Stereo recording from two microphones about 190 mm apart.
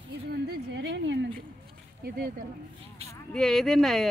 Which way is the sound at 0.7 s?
70° right (ahead or behind).